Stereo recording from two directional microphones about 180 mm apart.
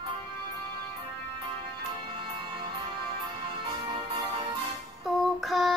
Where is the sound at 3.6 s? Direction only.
30° right (ahead or behind).